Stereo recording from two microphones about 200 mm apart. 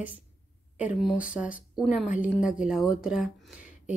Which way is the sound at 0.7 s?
5° right (ahead or behind).